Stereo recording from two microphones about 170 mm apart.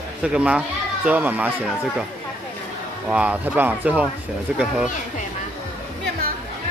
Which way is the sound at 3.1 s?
5° right (ahead or behind).